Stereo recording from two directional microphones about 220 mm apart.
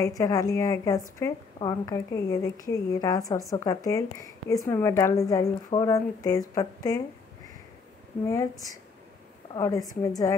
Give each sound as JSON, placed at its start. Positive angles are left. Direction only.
{"t": 0.2, "sound": "a woman's voice", "side_deg": 15}
{"t": 8.3, "sound": "a woman's voice", "side_deg": 15}